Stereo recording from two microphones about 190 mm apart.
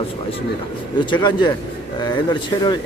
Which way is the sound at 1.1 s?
25° left (ahead or behind).